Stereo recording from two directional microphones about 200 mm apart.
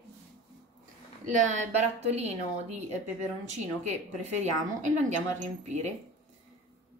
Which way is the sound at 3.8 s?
35° right (ahead or behind).